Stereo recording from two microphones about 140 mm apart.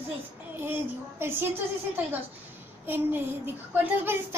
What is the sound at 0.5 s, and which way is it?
Speech, 15° right (ahead or behind).